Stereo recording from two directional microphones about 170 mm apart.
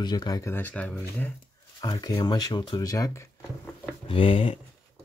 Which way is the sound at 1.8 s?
25° left (ahead or behind).